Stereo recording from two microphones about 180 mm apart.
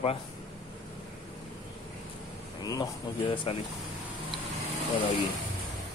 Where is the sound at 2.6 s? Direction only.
20° left (ahead or behind).